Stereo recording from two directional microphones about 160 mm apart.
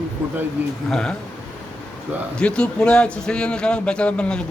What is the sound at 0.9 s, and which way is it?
Speech, 5° left (ahead or behind).